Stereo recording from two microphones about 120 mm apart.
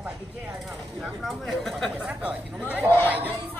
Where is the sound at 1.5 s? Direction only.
5° left (ahead or behind).